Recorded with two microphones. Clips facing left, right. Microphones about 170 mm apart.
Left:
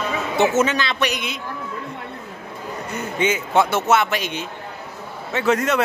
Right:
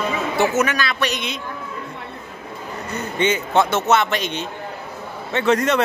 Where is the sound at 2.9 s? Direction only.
5° left (ahead or behind).